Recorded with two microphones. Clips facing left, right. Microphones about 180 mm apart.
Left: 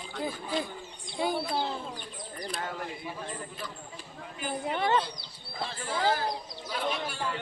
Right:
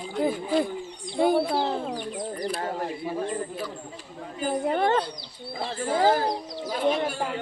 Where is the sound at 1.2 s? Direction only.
55° right (ahead or behind).